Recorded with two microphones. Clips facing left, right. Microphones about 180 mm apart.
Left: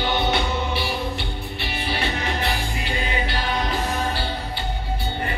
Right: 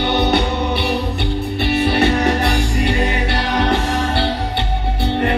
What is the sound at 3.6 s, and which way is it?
Music, 80° right.